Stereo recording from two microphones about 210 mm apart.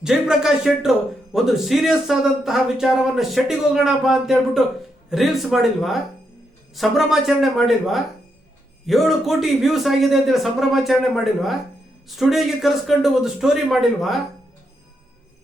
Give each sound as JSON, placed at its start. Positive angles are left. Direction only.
{"t": 0.0, "sound": "speech", "side_deg": 0}